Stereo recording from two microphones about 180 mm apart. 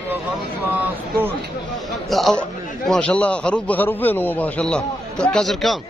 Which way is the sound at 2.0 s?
Centre (ahead or behind).